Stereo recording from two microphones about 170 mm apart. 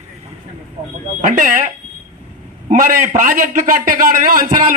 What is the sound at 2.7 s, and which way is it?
A man's voice, 50° right (ahead or behind).